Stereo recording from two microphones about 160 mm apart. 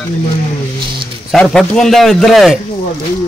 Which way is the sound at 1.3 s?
5° left (ahead or behind).